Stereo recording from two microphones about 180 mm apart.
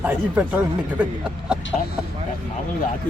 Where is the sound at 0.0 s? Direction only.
10° right (ahead or behind).